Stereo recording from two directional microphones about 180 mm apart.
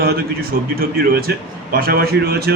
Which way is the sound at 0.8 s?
60° right (ahead or behind).